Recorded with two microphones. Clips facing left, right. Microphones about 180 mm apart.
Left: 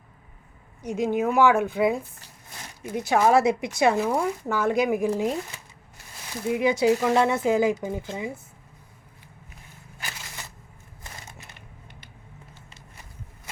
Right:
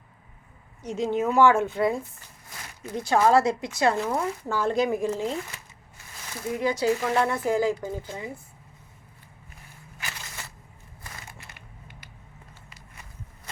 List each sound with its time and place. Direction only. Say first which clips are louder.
0.9 s speech: left 1 dB; 15° left (ahead or behind)
1.6 s speech: left 2 dB; 5° left (ahead or behind)
2.8 s speech: left 1 dB; 15° left (ahead or behind)
6.5 s speech: left 4 dB; 20° left (ahead or behind)
11.0 s crushing: even; 20° left (ahead or behind)